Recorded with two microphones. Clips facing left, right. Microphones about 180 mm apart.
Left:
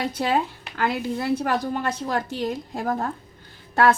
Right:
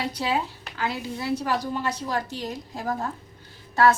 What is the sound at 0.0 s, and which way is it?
A woman's voice, 50° left (ahead or behind).